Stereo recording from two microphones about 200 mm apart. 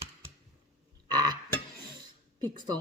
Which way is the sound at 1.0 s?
20° right (ahead or behind).